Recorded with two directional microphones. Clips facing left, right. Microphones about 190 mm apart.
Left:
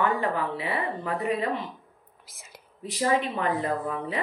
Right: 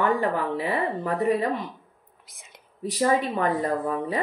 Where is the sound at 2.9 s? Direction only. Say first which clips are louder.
Right 3 dB; 40° right (ahead or behind).